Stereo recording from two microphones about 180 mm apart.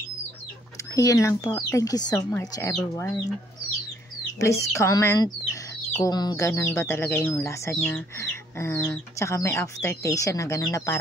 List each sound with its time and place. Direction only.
0.9 s speech: 20° left (ahead or behind)
4.4 s speech: 15° left (ahead or behind)